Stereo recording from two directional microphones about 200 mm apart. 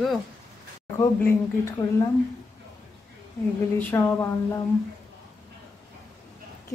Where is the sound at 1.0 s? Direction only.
15° left (ahead or behind).